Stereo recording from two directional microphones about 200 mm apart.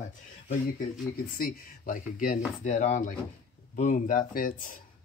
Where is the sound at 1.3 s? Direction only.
45° left (ahead or behind).